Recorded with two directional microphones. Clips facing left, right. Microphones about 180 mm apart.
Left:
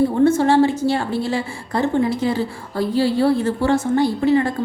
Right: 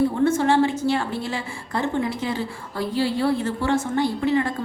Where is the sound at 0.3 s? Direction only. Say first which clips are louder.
Left 4 dB; 35° left (ahead or behind).